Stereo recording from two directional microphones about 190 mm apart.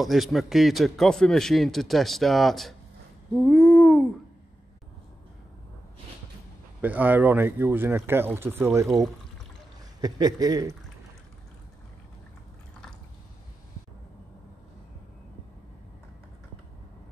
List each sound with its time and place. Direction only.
0.0 s a man's voice: centre (ahead or behind)
3.4 s babbling: centre (ahead or behind)
6.8 s speech: 10° right (ahead or behind)
8.8 s a man's voice: centre (ahead or behind)
9.9 s speech: 20° right (ahead or behind)